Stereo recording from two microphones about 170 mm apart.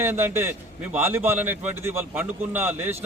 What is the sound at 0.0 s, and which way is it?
A man's voice, 10° right (ahead or behind).